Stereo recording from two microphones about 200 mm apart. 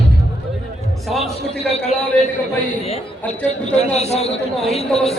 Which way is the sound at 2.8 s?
35° left (ahead or behind).